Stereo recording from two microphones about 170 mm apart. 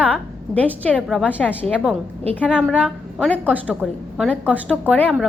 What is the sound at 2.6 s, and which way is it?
A woman's voice, centre (ahead or behind).